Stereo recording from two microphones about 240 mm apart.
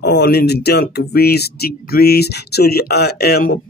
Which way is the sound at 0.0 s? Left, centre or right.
Left.